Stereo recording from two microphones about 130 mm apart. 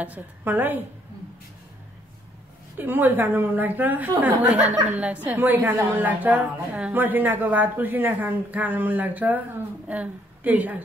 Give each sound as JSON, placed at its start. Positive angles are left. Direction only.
{"t": 0.0, "sound": "a woman's voice", "side_deg": -15}
{"t": 2.8, "sound": "a woman's voice", "side_deg": -15}